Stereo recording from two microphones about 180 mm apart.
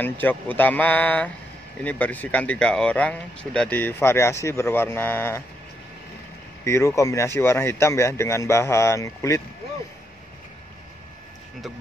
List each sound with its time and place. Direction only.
0.0 s speech: 10° left (ahead or behind)
6.6 s speech: 15° left (ahead or behind)